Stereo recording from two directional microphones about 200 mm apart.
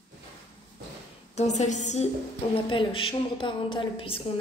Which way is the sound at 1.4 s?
35° left (ahead or behind).